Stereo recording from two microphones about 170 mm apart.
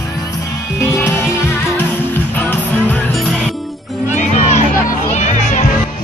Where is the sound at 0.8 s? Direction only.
15° left (ahead or behind).